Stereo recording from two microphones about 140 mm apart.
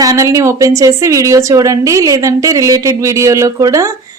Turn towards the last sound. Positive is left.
turn(degrees=-25)  # may be behind; listen again after turning